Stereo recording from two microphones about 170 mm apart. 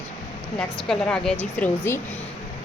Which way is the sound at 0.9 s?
5° left (ahead or behind).